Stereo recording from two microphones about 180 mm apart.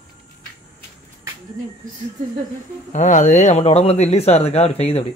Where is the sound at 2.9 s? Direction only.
45° left (ahead or behind).